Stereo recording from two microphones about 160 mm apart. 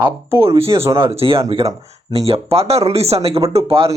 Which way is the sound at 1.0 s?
35° right (ahead or behind).